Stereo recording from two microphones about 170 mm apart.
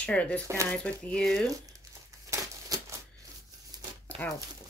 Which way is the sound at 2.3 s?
20° right (ahead or behind).